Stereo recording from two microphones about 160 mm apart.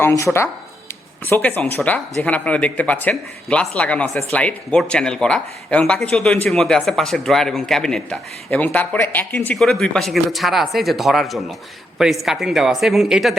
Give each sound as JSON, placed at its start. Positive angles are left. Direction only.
{"t": 0.0, "sound": "speech", "side_deg": 20}
{"t": 1.3, "sound": "speech", "side_deg": 10}